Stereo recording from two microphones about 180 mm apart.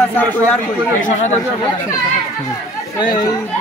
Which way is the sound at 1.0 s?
40° left (ahead or behind).